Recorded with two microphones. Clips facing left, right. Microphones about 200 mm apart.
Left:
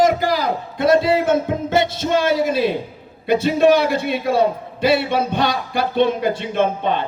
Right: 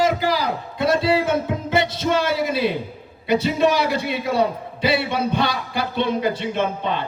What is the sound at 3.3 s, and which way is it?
Speech, 50° left (ahead or behind).